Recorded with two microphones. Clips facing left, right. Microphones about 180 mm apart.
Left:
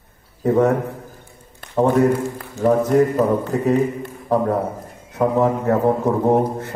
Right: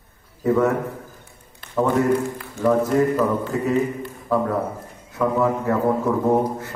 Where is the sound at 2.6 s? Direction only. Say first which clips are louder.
Left 3 dB; 35° left (ahead or behind).